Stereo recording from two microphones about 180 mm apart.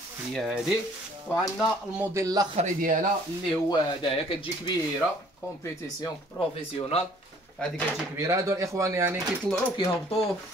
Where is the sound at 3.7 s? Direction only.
30° left (ahead or behind).